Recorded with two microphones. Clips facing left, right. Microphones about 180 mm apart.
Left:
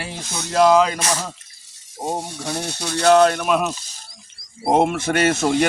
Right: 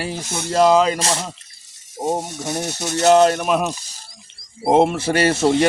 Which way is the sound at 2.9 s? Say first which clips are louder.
Right 1 dB; 25° right (ahead or behind).